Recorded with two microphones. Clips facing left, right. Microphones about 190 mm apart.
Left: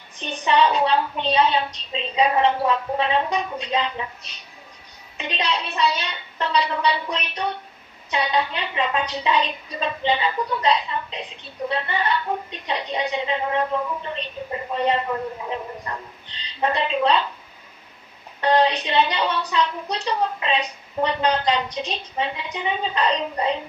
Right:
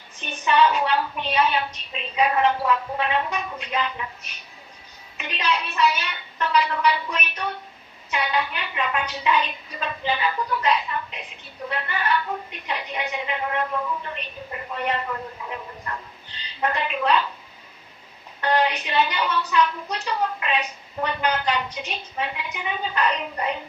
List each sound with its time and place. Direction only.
0.2 s a woman's voice: 30° left (ahead or behind)
5.1 s a woman's voice: 30° left (ahead or behind)
16.6 s a woman's voice: 25° left (ahead or behind)
18.3 s a woman's voice: 30° left (ahead or behind)